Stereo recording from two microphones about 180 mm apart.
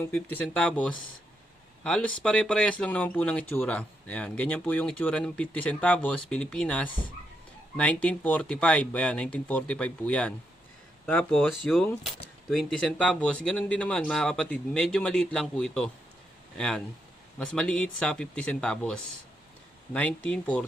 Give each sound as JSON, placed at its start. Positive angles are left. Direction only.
{"t": 0.0, "sound": "speech", "side_deg": 10}
{"t": 6.8, "sound": "speech", "side_deg": 25}
{"t": 7.8, "sound": "speech", "side_deg": 5}